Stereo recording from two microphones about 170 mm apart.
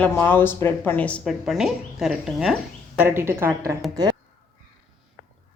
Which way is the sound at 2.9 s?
15° right (ahead or behind).